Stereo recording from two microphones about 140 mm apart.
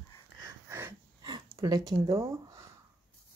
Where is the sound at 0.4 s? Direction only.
20° right (ahead or behind).